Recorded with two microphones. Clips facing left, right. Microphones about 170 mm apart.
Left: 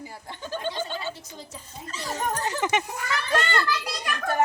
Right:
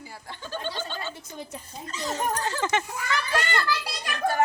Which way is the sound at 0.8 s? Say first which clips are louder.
Left 3 dB; 15° left (ahead or behind).